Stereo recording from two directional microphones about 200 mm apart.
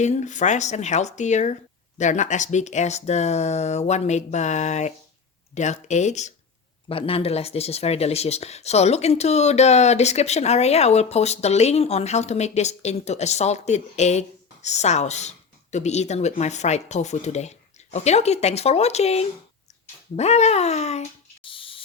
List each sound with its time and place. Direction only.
0.0 s speech: 35° left (ahead or behind)